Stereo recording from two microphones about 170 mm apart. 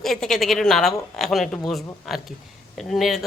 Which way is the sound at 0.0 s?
Centre (ahead or behind).